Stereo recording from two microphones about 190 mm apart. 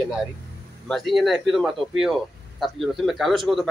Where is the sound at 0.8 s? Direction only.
Centre (ahead or behind).